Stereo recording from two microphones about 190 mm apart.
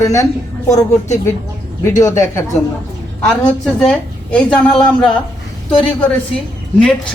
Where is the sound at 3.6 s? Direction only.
5° left (ahead or behind).